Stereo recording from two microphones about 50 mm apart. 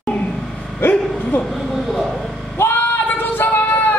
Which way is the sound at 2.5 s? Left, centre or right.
Left.